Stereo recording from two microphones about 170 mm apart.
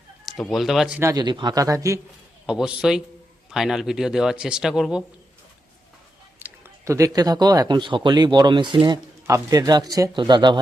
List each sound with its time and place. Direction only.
0.3 s speech: centre (ahead or behind)
0.9 s speech: 20° right (ahead or behind)
2.5 s speech: 5° right (ahead or behind)
6.4 s speech: 15° right (ahead or behind)